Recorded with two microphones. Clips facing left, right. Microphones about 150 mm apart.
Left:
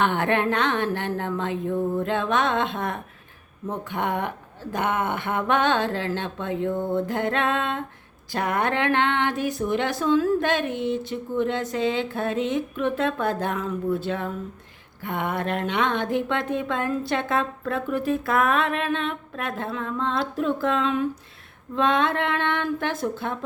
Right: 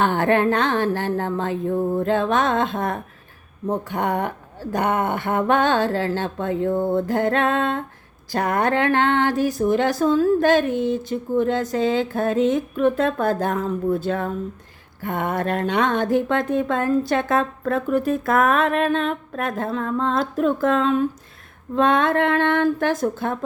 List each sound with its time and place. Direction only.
0.0 s speech: 35° right (ahead or behind)